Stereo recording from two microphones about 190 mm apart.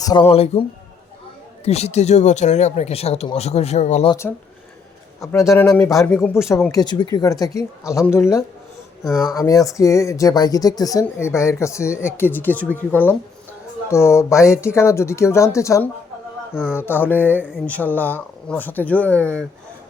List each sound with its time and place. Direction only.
0.1 s speech: 30° left (ahead or behind)
1.6 s speech: 35° left (ahead or behind)
4.1 s speech: 15° left (ahead or behind)